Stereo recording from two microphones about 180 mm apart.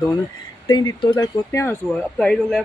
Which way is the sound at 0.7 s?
25° left (ahead or behind).